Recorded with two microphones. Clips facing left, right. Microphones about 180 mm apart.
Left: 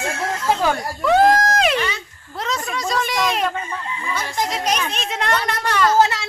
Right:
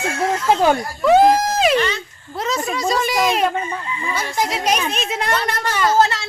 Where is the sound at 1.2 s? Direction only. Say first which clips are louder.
Right 1 dB; 10° right (ahead or behind).